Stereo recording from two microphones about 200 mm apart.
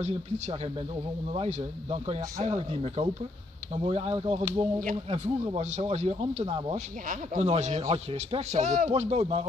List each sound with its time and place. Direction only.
1.3 s speech: 30° right (ahead or behind)
4.7 s speech: 40° right (ahead or behind)